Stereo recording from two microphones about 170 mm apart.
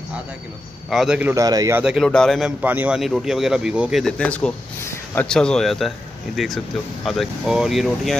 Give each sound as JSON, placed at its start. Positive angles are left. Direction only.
{"t": 0.8, "sound": "speech", "side_deg": -5}
{"t": 1.3, "sound": "a man's voice", "side_deg": -20}
{"t": 1.8, "sound": "speech", "side_deg": -5}
{"t": 2.6, "sound": "speech", "side_deg": -10}
{"t": 4.0, "sound": "speech", "side_deg": 5}